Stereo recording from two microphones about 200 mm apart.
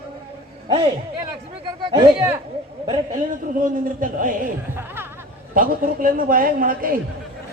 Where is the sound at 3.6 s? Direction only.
40° right (ahead or behind).